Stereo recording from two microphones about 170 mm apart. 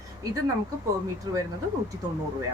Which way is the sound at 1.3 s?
25° right (ahead or behind).